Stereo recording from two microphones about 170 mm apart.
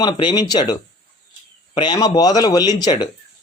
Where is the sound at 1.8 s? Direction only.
25° left (ahead or behind).